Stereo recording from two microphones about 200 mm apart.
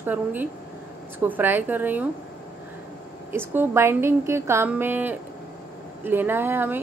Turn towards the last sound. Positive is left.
turn(degrees=-10)  # may be behind; listen again after turning